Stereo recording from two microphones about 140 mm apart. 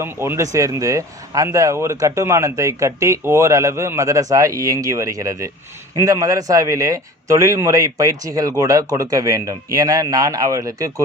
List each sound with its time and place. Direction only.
0.0 s speech: 20° right (ahead or behind)